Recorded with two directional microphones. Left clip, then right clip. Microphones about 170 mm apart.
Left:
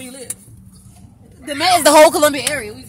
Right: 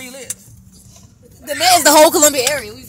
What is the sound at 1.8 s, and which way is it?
Speech, 10° left (ahead or behind).